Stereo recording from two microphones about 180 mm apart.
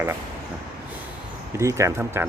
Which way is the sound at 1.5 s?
15° right (ahead or behind).